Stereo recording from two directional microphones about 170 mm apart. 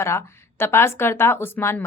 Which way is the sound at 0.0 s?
15° left (ahead or behind).